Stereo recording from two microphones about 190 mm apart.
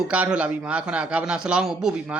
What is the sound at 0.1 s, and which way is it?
A man's voice, 5° right (ahead or behind).